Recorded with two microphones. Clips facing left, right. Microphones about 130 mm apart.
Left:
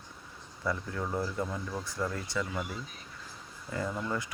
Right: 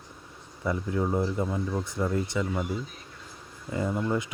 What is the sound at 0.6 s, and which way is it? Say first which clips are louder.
Speech: right 6 dB; 20° right (ahead or behind).